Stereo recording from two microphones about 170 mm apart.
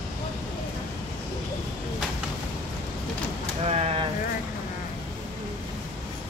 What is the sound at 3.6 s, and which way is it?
Speech, 35° right (ahead or behind).